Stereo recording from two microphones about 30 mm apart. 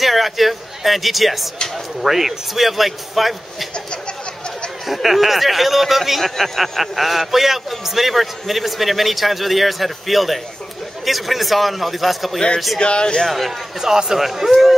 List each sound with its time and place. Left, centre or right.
0.0 s a man's voice: centre
4.8 s a man's voice: centre
6.2 s a man's voice: centre
12.8 s speech: left
13.3 s a man's voice: centre